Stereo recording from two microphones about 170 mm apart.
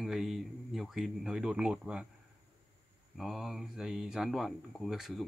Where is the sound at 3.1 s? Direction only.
Centre (ahead or behind).